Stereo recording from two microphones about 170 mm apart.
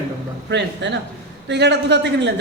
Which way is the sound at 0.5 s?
90° right.